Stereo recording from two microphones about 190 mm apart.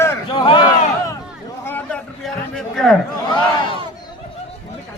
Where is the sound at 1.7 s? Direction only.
10° left (ahead or behind).